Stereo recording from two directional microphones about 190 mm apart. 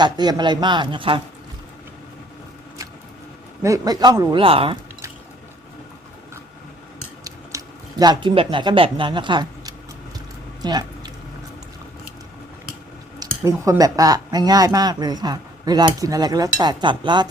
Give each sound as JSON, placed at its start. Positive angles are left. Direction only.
{"t": 0.0, "sound": "speech", "side_deg": -20}
{"t": 3.6, "sound": "speech", "side_deg": -20}
{"t": 7.3, "sound": "speech", "side_deg": -20}
{"t": 10.6, "sound": "a sound", "side_deg": -20}
{"t": 13.1, "sound": "speech", "side_deg": -20}